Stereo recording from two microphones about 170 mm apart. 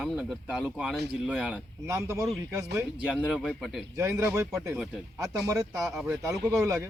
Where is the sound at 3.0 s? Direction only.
5° right (ahead or behind).